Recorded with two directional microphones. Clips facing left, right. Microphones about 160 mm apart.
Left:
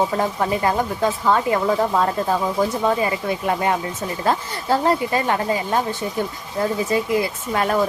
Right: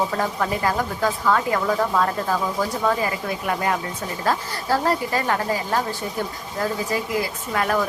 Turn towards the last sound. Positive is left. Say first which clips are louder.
# left 2 dB
turn(degrees=25)  # may be behind; listen again after turning